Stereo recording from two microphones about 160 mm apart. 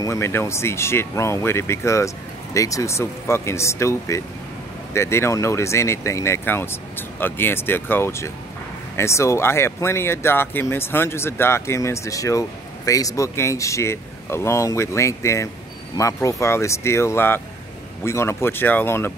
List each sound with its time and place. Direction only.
0.0 s speech: 15° left (ahead or behind)